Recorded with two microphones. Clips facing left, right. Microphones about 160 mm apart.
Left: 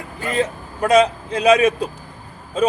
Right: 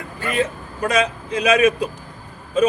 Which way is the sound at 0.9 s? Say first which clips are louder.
Left 6 dB; 30° left (ahead or behind).